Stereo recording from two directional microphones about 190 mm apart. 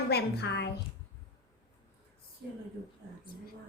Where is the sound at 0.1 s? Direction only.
60° left (ahead or behind).